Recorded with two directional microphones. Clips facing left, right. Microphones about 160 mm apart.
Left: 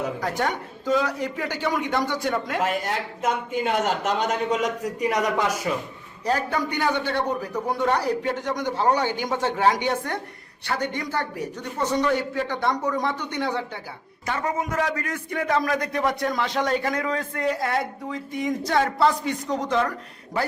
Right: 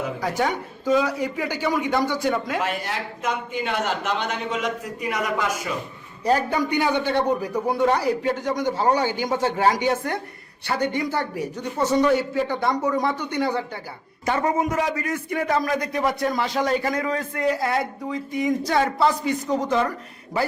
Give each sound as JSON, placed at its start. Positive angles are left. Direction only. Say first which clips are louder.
{"t": 0.2, "sound": "speech", "louder": "right 2 dB", "side_deg": -5}
{"t": 2.6, "sound": "speech", "louder": "left 2 dB", "side_deg": 40}
{"t": 6.2, "sound": "a man's voice", "louder": "right 3 dB", "side_deg": -10}
{"t": 14.3, "sound": "a man's voice", "louder": "right 5 dB", "side_deg": -20}
{"t": 14.7, "sound": "speech", "louder": "right 2 dB", "side_deg": -10}